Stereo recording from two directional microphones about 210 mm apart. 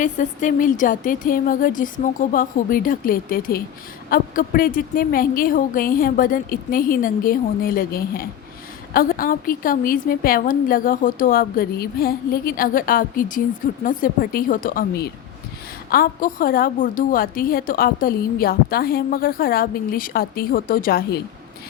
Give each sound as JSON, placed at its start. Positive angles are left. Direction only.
{"t": 0.0, "sound": "a woman's voice", "side_deg": 40}